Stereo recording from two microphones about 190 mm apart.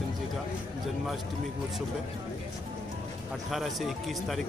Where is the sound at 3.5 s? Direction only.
Centre (ahead or behind).